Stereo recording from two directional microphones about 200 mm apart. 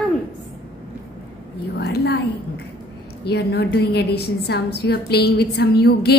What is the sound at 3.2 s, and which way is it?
A woman's voice, 55° left (ahead or behind).